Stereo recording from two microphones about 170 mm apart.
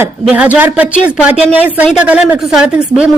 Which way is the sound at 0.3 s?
10° right (ahead or behind).